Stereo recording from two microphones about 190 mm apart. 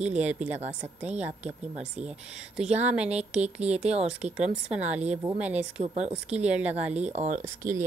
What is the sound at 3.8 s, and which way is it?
Speech, 35° right (ahead or behind).